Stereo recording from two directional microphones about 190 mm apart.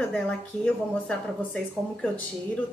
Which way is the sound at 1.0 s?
5° left (ahead or behind).